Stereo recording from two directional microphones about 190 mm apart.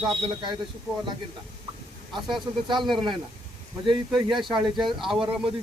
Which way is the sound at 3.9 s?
25° right (ahead or behind).